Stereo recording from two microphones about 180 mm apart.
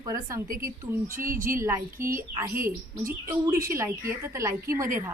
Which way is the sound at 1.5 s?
15° right (ahead or behind).